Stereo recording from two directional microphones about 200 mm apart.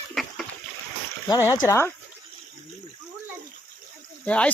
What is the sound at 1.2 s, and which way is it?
Speech, 15° left (ahead or behind).